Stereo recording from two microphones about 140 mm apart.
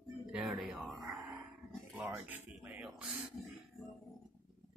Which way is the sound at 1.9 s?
10° right (ahead or behind).